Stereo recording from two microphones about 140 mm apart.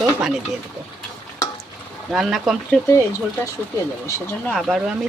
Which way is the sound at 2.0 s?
Centre (ahead or behind).